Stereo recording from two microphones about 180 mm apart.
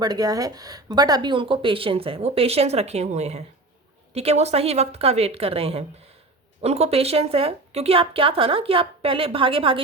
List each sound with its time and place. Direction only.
0.0 s speech: 20° right (ahead or behind)